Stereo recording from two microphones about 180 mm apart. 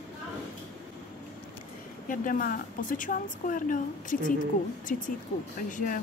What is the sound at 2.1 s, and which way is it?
A woman's voice, 50° left (ahead or behind).